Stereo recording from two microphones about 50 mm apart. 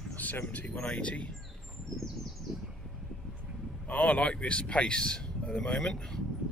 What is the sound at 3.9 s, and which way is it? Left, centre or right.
Speech, left.